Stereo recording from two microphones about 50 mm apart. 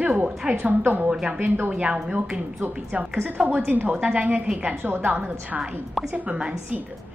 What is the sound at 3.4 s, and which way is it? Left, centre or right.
Speech, right.